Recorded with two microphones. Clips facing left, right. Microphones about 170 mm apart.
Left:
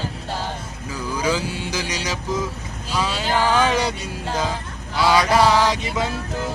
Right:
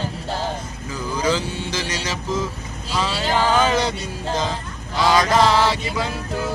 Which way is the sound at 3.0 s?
10° left (ahead or behind).